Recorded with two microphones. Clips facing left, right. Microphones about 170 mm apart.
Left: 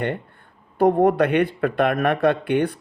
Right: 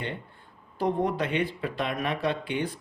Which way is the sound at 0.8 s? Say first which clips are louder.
Left 10 dB; 60° left (ahead or behind).